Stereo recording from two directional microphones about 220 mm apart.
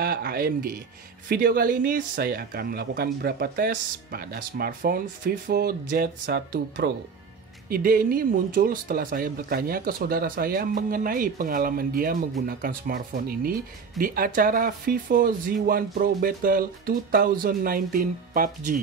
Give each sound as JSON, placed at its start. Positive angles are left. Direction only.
{"t": 0.0, "sound": "speech", "side_deg": -45}